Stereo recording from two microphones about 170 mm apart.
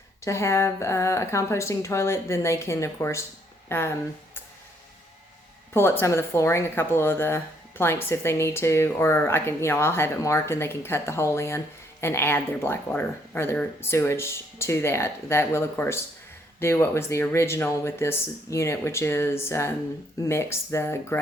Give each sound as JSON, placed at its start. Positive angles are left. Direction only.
{"t": 0.3, "sound": "speech", "side_deg": 15}
{"t": 5.7, "sound": "speech", "side_deg": 15}